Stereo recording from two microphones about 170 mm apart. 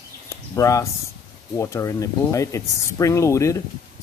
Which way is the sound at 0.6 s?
20° left (ahead or behind).